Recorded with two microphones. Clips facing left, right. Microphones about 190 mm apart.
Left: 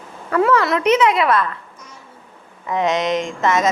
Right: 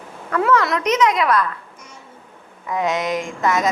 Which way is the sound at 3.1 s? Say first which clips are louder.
Left 3 dB; 20° left (ahead or behind).